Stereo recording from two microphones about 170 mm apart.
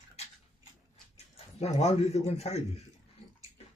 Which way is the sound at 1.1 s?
40° left (ahead or behind).